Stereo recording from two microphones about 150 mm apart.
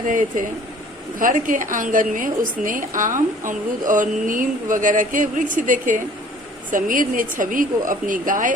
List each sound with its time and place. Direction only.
0.1 s speech: 60° right (ahead or behind)